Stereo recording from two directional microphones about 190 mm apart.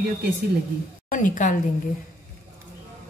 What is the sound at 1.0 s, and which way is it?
Speech, 45° left (ahead or behind).